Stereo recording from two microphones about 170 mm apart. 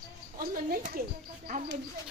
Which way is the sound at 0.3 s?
55° right (ahead or behind).